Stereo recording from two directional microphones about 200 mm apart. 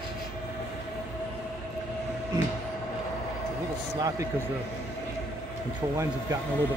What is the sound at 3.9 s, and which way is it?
Speech, 15° right (ahead or behind).